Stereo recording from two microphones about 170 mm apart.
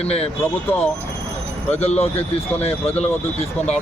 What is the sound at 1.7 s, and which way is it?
Speech, 40° left (ahead or behind).